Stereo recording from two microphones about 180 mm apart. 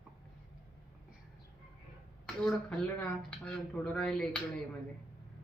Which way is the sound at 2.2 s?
5° left (ahead or behind).